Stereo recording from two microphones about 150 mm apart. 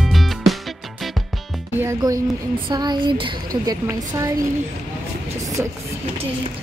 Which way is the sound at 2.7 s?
30° right (ahead or behind).